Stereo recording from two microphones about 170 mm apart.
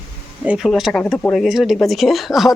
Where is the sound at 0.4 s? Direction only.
5° right (ahead or behind).